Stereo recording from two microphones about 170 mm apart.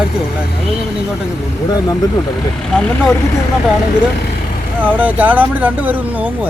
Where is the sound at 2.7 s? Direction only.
5° left (ahead or behind).